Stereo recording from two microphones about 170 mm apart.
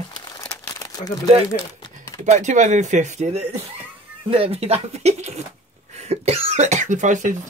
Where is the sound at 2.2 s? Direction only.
45° right (ahead or behind).